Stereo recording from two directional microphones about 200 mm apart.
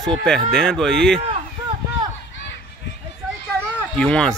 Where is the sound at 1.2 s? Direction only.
30° right (ahead or behind).